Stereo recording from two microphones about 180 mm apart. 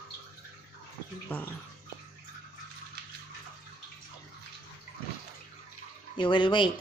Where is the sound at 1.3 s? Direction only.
10° left (ahead or behind).